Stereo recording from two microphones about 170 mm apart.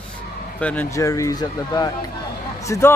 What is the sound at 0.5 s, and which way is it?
Speech, 10° left (ahead or behind).